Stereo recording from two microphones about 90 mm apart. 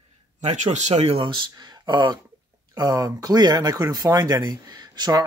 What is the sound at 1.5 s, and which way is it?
Speech, 50° right (ahead or behind).